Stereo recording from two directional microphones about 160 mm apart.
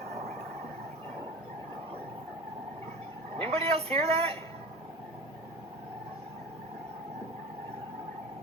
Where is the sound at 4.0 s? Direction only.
40° right (ahead or behind).